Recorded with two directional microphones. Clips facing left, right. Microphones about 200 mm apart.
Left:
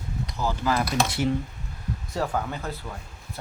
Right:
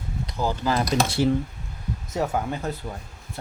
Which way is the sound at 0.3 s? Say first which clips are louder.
Right 2 dB; 30° right (ahead or behind).